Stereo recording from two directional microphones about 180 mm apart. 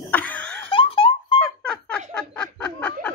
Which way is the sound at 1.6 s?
5° left (ahead or behind).